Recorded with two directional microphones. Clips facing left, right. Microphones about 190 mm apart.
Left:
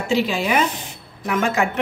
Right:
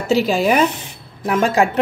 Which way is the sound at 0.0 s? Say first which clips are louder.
Right 4 dB; 40° right (ahead or behind).